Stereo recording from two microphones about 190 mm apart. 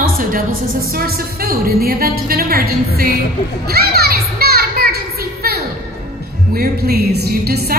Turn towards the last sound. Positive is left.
turn(degrees=-55)  # may be behind; listen again after turning